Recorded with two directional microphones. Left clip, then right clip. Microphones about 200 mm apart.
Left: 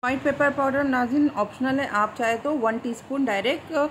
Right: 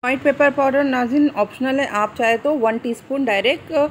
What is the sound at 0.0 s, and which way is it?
Speech, 15° right (ahead or behind).